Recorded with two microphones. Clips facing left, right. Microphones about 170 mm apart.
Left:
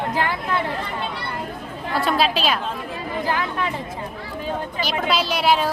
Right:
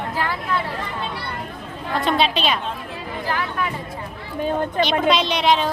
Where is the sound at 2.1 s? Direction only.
5° left (ahead or behind).